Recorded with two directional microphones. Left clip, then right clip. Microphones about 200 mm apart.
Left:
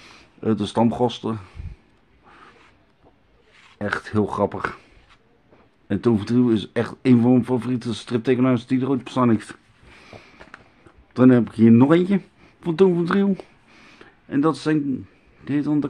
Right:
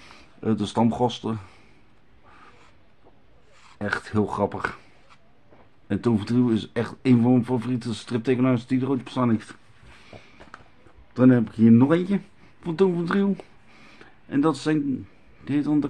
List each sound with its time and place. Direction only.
0.0 s speech: 15° left (ahead or behind)
3.7 s speech: 20° left (ahead or behind)
5.9 s speech: 15° left (ahead or behind)
10.0 s a sound: 35° left (ahead or behind)
11.1 s speech: 30° left (ahead or behind); by 15.9 s 15° left (ahead or behind)